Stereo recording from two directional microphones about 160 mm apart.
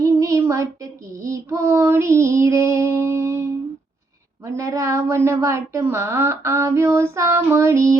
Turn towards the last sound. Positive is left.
turn(degrees=-15)  # may be behind; listen again after turning